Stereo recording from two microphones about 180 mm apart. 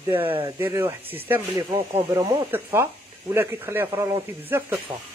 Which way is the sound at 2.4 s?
10° right (ahead or behind).